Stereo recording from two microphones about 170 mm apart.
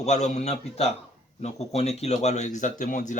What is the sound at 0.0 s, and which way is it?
Speech, 45° left (ahead or behind).